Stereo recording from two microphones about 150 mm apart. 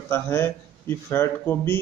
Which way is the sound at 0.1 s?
15° left (ahead or behind).